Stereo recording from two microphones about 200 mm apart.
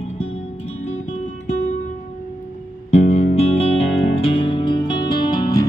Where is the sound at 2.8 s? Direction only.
35° left (ahead or behind).